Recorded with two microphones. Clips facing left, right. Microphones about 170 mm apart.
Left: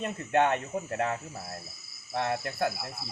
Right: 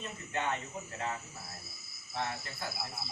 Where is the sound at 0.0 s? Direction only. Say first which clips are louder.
Left 11 dB; 65° left (ahead or behind).